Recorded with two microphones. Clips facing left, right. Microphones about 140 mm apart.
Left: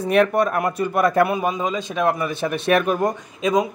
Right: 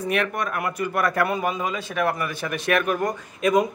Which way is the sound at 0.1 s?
35° left (ahead or behind).